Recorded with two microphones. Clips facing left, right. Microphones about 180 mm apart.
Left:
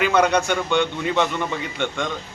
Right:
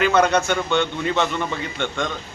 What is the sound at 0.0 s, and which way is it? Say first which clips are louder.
Speech: right 1 dB; 15° left (ahead or behind).